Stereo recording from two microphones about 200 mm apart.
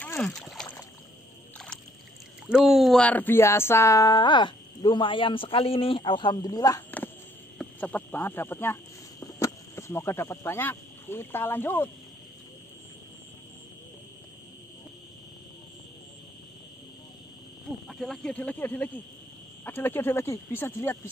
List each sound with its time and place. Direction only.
0.0 s a sound: 5° left (ahead or behind)
2.4 s speech: 5° right (ahead or behind); by 6.8 s 20° left (ahead or behind)
7.5 s speech: 10° left (ahead or behind)
17.8 s speech: centre (ahead or behind)